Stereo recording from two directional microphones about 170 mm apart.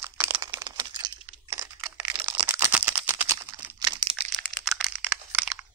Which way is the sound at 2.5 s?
10° right (ahead or behind).